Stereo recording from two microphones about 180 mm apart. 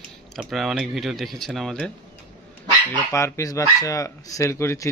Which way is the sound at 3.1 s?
15° left (ahead or behind).